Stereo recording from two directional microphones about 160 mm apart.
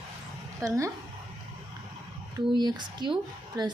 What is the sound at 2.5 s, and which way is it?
Speech, 25° right (ahead or behind).